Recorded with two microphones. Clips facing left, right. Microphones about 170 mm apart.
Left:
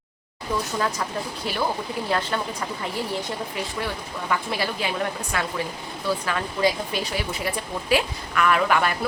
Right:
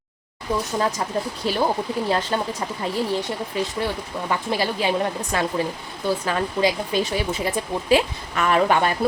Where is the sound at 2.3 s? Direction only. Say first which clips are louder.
Right 3 dB; 25° right (ahead or behind).